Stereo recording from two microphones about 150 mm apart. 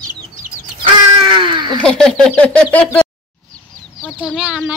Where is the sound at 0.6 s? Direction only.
35° right (ahead or behind).